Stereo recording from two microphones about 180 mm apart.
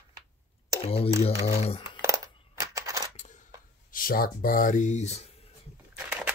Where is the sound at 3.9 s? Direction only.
50° left (ahead or behind).